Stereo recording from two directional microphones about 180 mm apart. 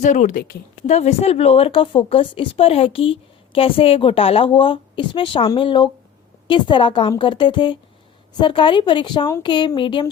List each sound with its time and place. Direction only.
0.0 s speech: 45° left (ahead or behind)
0.9 s a woman's voice: 35° left (ahead or behind)